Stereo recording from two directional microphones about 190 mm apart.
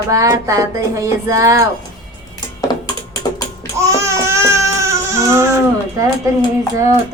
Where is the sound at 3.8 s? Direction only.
15° right (ahead or behind).